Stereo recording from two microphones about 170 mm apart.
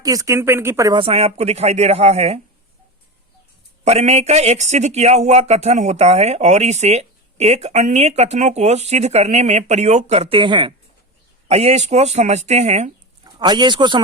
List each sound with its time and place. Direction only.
0.0 s speech: 20° right (ahead or behind)
0.9 s speech: 35° right (ahead or behind)
3.8 s speech: 40° right (ahead or behind)
11.4 s speech: 40° right (ahead or behind)
13.2 s speech: 25° right (ahead or behind)